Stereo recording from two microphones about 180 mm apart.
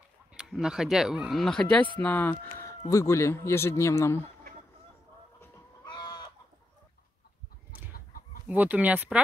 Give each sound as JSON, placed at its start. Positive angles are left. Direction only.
{"t": 0.3, "sound": "speech", "side_deg": -5}
{"t": 5.9, "sound": "chicken", "side_deg": 25}
{"t": 7.9, "sound": "chicken", "side_deg": 55}
{"t": 8.5, "sound": "speech", "side_deg": -10}